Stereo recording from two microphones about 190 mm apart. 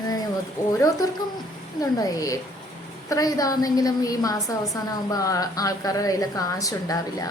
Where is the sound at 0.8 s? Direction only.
20° left (ahead or behind).